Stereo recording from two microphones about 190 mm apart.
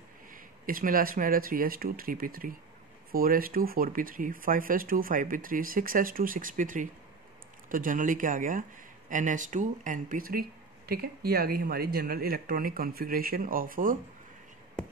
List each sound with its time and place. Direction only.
0.3 s speech: 45° right (ahead or behind)